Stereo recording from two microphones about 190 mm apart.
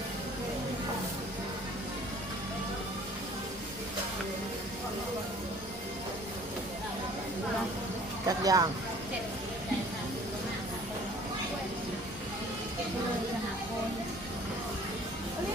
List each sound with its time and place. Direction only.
8.3 s speech: 20° right (ahead or behind)